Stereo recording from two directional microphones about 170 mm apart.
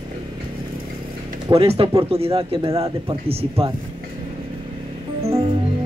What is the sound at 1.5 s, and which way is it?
A man's voice, 35° right (ahead or behind).